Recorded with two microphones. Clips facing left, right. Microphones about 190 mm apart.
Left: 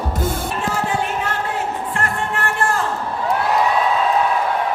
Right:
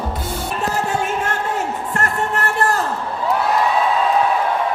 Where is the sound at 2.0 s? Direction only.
40° right (ahead or behind).